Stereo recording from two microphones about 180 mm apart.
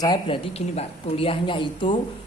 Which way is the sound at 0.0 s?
25° left (ahead or behind).